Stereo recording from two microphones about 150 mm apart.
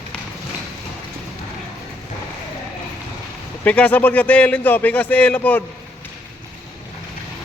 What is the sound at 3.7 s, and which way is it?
A man's voice, 10° left (ahead or behind).